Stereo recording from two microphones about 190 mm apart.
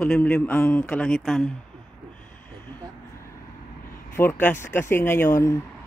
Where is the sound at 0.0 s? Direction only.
10° left (ahead or behind).